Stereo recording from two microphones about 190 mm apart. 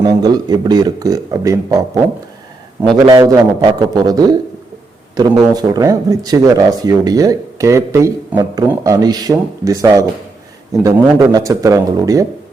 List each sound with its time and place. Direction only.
0.0 s speech: 20° right (ahead or behind)
2.8 s speech: 20° right (ahead or behind)